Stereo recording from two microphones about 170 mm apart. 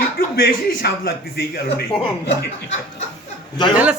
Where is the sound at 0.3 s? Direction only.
65° left (ahead or behind).